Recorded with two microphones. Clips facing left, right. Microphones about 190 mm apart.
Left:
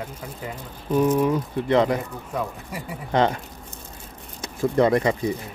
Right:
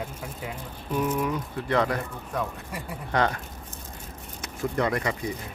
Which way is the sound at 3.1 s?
20° left (ahead or behind).